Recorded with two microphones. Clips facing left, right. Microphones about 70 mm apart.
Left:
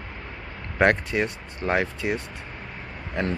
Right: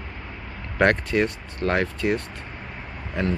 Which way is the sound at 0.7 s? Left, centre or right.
Centre.